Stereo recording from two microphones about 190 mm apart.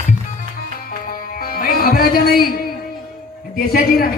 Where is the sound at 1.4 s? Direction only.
50° left (ahead or behind).